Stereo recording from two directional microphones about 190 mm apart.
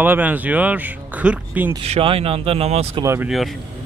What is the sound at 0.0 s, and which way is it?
Speech, 10° right (ahead or behind).